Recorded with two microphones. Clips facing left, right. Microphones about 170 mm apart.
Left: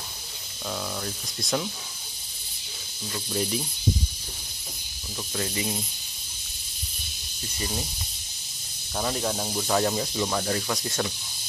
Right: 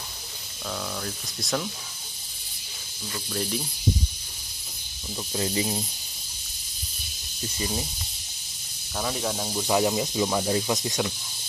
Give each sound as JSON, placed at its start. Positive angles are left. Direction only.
{"t": 0.7, "sound": "speech", "side_deg": 0}
{"t": 3.3, "sound": "speech", "side_deg": 0}
{"t": 5.3, "sound": "speech", "side_deg": -25}
{"t": 8.9, "sound": "speech", "side_deg": 0}
{"t": 9.7, "sound": "speech", "side_deg": -10}